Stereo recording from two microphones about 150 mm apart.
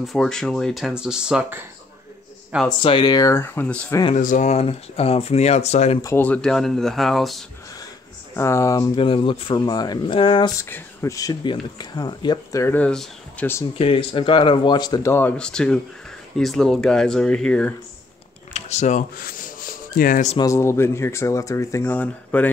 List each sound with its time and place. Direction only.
0.0 s speech: centre (ahead or behind)
2.8 s speech: 35° left (ahead or behind); by 3.9 s 10° left (ahead or behind)
4.1 s speech: 60° left (ahead or behind)
6.0 s speech: 10° left (ahead or behind)
8.4 s speech: 20° left (ahead or behind)
8.9 s speech: 35° left (ahead or behind)
10.6 s speech: 20° left (ahead or behind)
12.6 s speech: 10° left (ahead or behind)
13.7 s speech: 35° left (ahead or behind)
15.1 s speech: 10° left (ahead or behind)
18.5 s a sound: 50° left (ahead or behind)
19.1 s rub: 75° left (ahead or behind)
20.3 s speech: 20° left (ahead or behind)